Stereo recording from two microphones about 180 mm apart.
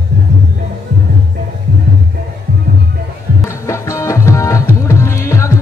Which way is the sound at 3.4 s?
15° left (ahead or behind).